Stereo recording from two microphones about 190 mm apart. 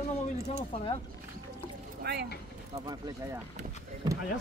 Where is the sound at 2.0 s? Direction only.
55° right (ahead or behind).